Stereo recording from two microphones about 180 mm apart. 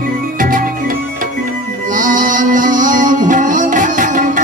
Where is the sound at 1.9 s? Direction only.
45° right (ahead or behind).